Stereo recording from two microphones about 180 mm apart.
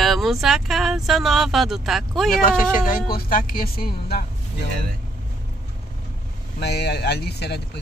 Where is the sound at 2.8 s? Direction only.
50° left (ahead or behind).